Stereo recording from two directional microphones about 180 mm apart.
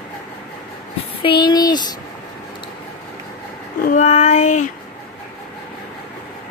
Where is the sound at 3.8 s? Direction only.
45° left (ahead or behind).